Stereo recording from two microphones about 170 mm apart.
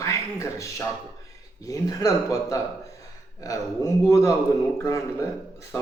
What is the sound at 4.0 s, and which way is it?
Speech, 20° left (ahead or behind).